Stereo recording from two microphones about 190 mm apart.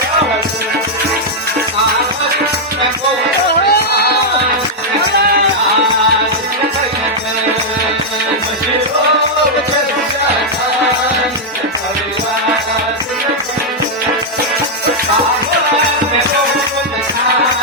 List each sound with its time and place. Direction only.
3.5 s music: 55° left (ahead or behind)